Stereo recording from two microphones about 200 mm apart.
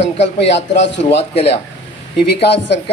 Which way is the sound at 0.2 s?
60° left (ahead or behind).